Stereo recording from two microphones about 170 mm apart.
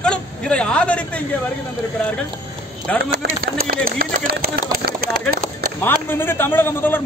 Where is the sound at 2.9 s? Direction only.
5° left (ahead or behind).